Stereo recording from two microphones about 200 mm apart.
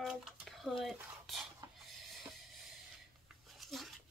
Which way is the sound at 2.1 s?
Centre (ahead or behind).